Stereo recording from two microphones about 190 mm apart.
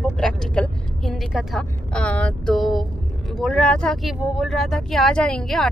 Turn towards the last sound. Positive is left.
turn(degrees=5)  # may be behind; listen again after turning